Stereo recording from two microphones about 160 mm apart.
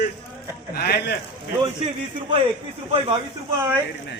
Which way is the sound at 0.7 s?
85° left.